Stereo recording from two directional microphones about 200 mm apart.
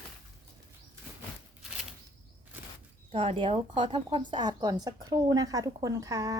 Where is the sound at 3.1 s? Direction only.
25° right (ahead or behind).